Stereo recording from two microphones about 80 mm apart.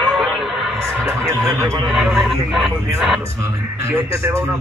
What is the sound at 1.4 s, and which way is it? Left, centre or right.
Speech, right.